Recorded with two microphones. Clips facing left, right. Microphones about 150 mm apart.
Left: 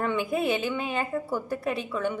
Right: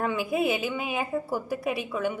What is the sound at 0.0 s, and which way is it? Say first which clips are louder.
A woman's voice: even; 5° right (ahead or behind).